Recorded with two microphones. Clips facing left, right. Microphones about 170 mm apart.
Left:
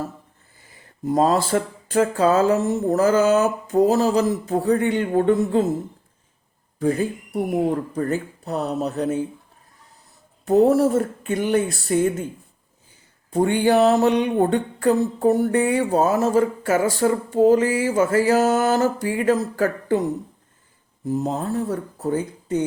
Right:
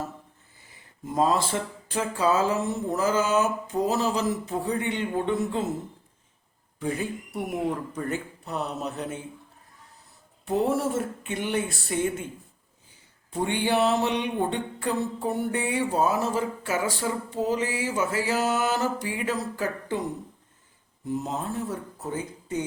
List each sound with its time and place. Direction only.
1.1 s speech: 40° left (ahead or behind)
6.7 s speech: 40° left (ahead or behind)
10.4 s speech: 40° left (ahead or behind)
13.3 s speech: 45° left (ahead or behind)
21.1 s speech: 40° left (ahead or behind)